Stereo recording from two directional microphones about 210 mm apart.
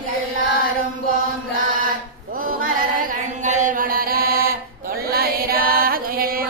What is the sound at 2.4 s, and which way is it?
Chant, 40° right (ahead or behind).